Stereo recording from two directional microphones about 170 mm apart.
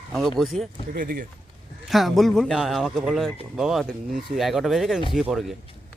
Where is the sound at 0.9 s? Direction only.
55° right (ahead or behind).